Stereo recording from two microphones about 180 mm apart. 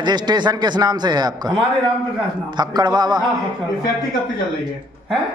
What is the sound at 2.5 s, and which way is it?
Speech, 25° right (ahead or behind).